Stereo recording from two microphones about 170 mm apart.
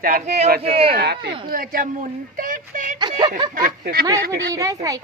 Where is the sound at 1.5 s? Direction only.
55° right (ahead or behind).